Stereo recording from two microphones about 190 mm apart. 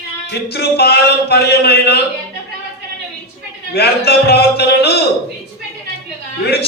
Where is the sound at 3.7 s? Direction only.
60° left (ahead or behind).